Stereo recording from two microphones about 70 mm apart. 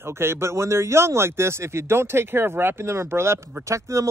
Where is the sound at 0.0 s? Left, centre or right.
Right.